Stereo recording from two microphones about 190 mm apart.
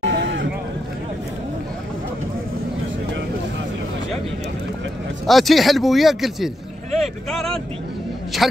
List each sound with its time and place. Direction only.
0.0 s vehicle: 75° right (ahead or behind)
5.2 s speech: centre (ahead or behind)